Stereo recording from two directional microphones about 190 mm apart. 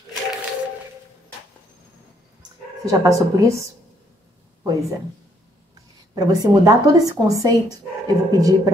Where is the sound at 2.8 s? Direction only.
20° right (ahead or behind).